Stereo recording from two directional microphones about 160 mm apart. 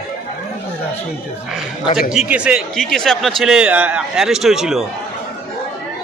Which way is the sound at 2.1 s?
5° right (ahead or behind).